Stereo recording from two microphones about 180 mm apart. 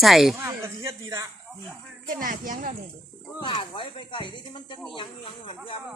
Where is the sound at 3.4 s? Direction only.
25° left (ahead or behind).